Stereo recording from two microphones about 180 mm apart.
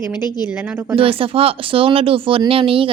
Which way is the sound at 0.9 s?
30° right (ahead or behind).